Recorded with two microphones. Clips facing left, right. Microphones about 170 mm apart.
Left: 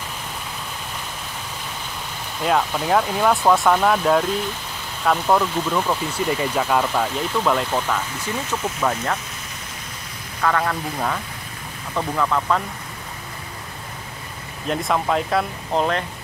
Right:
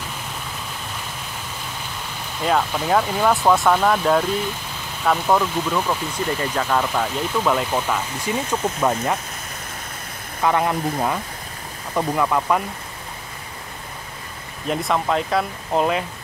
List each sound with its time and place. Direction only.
2.4 s speech: centre (ahead or behind)
10.4 s speech: 20° right (ahead or behind)
14.7 s speech: centre (ahead or behind)